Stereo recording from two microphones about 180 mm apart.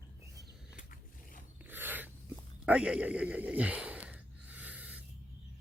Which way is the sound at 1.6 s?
10° right (ahead or behind).